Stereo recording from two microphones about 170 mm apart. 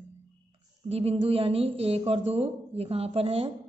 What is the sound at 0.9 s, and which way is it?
A man's voice, 35° right (ahead or behind).